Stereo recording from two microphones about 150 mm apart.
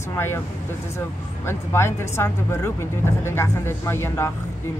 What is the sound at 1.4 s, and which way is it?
Speech, 15° left (ahead or behind).